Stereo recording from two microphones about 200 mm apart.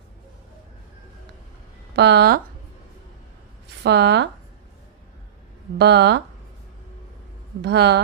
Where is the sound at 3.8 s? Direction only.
55° right (ahead or behind).